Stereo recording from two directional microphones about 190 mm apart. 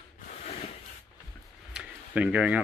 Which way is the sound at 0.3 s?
35° left (ahead or behind).